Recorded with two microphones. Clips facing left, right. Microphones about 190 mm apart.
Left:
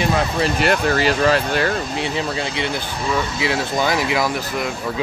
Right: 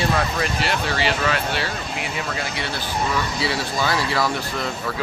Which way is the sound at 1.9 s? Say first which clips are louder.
Left 5 dB; 30° left (ahead or behind).